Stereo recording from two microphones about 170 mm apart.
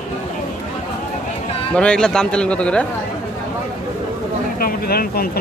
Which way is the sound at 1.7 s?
5° left (ahead or behind).